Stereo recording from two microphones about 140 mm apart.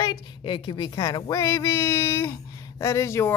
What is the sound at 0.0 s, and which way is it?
Speech, 35° left (ahead or behind).